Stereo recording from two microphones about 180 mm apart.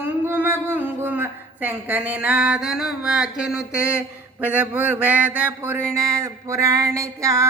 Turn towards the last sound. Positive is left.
turn(degrees=-15)  # may be behind; listen again after turning